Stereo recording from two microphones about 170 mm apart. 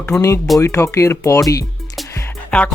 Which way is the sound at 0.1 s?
Centre (ahead or behind).